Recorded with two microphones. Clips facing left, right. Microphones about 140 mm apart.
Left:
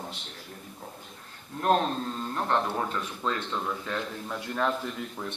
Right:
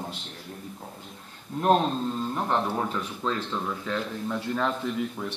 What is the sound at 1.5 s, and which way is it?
Speech, 20° right (ahead or behind).